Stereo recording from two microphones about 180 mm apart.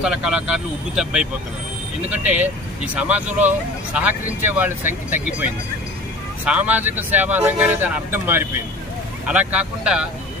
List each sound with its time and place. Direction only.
0.0 s speech: 5° right (ahead or behind)
6.4 s speech: 10° right (ahead or behind)